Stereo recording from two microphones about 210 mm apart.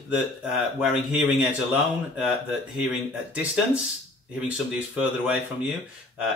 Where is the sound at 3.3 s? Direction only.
5° right (ahead or behind).